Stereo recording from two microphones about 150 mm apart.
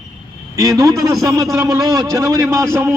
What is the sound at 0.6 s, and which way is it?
A man's voice, 20° right (ahead or behind).